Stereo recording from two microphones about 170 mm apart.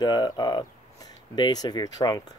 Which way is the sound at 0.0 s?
25° left (ahead or behind).